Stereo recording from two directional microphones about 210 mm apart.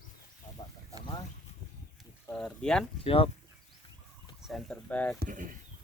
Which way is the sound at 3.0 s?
25° left (ahead or behind).